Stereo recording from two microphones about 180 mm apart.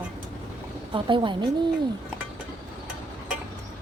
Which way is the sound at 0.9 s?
25° right (ahead or behind).